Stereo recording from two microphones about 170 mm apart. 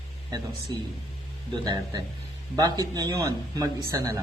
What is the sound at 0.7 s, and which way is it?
Speech, 25° right (ahead or behind).